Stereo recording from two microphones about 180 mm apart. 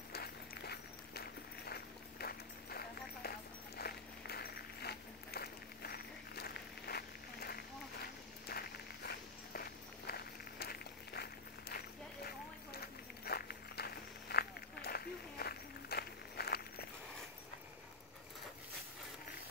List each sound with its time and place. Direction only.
0.1 s walk: 60° left (ahead or behind)
1.7 s run: 60° left (ahead or behind)
12.7 s walk: 60° left (ahead or behind)